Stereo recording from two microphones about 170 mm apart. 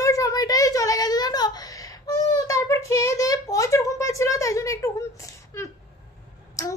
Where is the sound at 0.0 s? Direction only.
20° left (ahead or behind).